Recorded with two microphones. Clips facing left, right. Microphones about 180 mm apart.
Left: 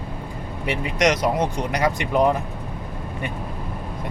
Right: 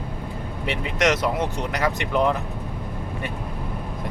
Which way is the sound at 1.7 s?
15° left (ahead or behind).